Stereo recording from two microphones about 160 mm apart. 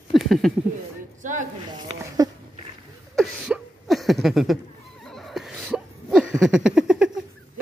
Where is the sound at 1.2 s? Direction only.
55° right (ahead or behind).